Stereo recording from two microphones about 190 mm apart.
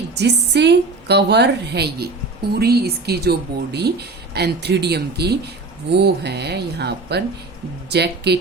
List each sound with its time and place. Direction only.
0.2 s speech: 65° right (ahead or behind)